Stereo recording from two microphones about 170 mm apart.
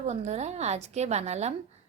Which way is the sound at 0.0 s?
40° right (ahead or behind).